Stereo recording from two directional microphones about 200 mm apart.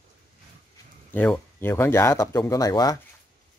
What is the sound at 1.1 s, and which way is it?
Speech, 10° left (ahead or behind).